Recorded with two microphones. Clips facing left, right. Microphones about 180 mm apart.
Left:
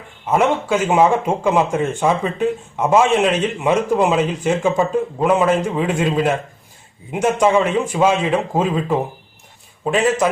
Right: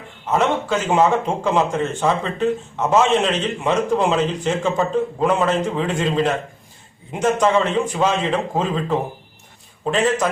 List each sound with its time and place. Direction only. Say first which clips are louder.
0.3 s a man's voice: left 2 dB; 10° left (ahead or behind)